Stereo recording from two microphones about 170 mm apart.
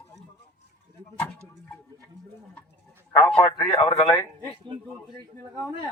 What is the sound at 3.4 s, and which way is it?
Speech, 30° left (ahead or behind).